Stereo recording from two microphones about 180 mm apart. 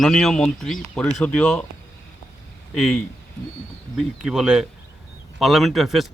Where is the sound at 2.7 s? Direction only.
Centre (ahead or behind).